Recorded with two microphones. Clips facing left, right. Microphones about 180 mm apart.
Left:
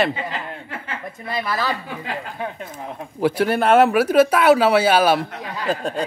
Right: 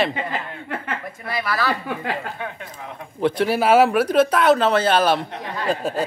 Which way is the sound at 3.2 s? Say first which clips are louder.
Left 1 dB; 5° left (ahead or behind).